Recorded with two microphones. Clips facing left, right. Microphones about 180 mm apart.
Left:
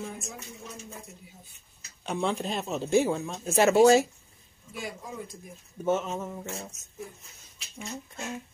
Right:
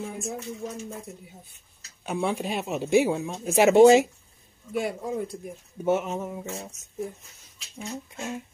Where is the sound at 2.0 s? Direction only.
5° right (ahead or behind).